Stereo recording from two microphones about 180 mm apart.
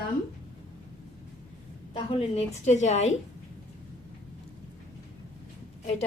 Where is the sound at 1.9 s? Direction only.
30° left (ahead or behind).